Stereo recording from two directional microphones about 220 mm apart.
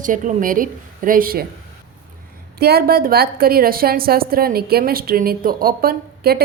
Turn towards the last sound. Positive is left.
turn(degrees=-45)  # may be behind; listen again after turning